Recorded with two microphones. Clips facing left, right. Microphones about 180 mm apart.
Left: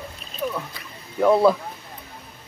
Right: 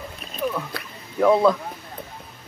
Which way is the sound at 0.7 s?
70° right (ahead or behind).